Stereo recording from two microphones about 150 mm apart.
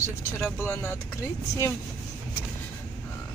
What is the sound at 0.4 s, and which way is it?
Speech, 15° left (ahead or behind).